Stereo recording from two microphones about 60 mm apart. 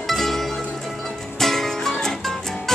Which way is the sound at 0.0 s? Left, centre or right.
Centre.